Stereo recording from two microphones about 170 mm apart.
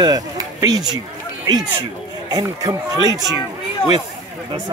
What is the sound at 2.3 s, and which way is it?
Speech, 20° right (ahead or behind).